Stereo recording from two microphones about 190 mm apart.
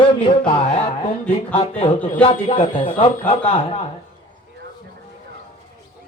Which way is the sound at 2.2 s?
30° left (ahead or behind).